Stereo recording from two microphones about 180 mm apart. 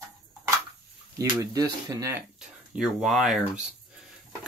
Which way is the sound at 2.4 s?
5° right (ahead or behind).